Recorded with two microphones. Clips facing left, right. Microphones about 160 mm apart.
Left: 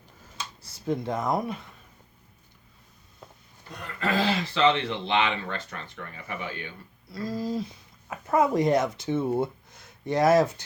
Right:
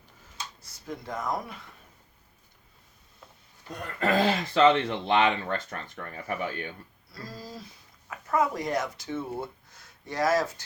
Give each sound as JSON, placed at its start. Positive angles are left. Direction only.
{"t": 0.6, "sound": "speech", "side_deg": 30}
{"t": 3.8, "sound": "speech", "side_deg": -50}
{"t": 7.1, "sound": "speech", "side_deg": 25}